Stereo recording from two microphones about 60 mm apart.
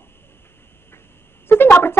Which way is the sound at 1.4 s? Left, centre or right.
Left.